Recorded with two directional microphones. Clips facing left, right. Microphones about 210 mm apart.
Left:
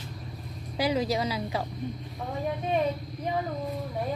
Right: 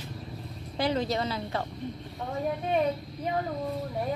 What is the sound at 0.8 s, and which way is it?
Speech, 10° left (ahead or behind).